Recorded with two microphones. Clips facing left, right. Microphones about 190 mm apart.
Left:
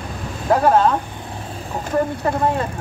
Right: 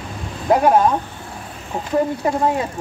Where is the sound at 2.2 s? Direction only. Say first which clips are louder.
Right 1 dB; 15° right (ahead or behind).